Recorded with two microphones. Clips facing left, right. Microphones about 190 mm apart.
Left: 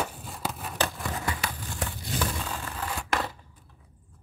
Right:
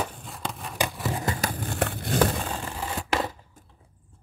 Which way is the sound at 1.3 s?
45° right (ahead or behind).